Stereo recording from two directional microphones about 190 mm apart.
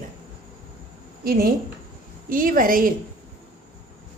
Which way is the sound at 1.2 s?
50° right (ahead or behind).